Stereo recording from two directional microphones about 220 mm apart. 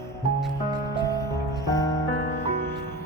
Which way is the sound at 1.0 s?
15° left (ahead or behind).